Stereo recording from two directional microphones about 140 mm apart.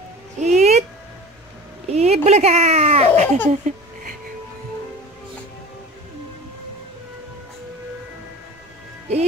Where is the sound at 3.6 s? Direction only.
75° right (ahead or behind).